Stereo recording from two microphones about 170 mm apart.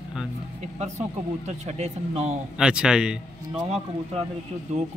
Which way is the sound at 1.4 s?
40° right (ahead or behind).